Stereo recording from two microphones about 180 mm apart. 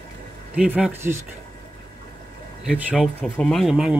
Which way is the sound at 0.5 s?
5° right (ahead or behind).